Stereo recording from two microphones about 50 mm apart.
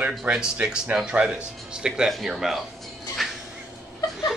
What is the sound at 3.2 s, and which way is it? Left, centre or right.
Cat, centre.